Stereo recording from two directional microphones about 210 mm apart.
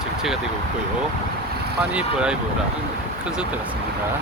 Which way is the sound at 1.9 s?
5° right (ahead or behind).